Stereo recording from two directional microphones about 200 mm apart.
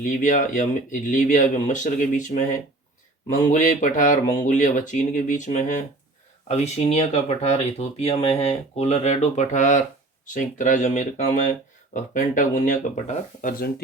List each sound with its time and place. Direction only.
0.0 s speech: 40° left (ahead or behind)